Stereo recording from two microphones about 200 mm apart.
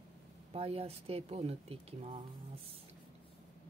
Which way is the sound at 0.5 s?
30° right (ahead or behind).